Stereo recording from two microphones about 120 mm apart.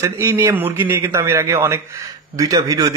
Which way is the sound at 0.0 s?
25° right (ahead or behind).